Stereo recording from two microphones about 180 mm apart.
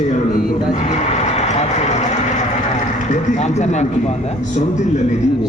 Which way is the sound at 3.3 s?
40° left (ahead or behind).